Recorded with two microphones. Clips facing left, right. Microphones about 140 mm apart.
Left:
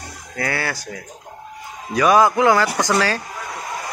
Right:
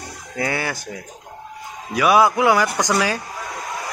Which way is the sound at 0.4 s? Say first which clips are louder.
Even; 20° right (ahead or behind).